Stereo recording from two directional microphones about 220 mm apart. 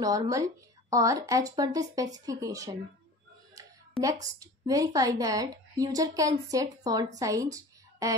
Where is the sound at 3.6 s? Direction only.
15° right (ahead or behind).